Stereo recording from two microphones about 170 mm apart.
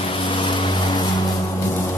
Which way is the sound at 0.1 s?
30° left (ahead or behind).